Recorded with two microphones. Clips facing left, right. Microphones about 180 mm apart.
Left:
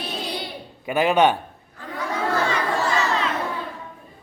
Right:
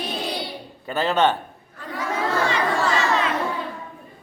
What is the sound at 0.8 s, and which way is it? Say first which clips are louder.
Speech: left 2 dB; 10° left (ahead or behind).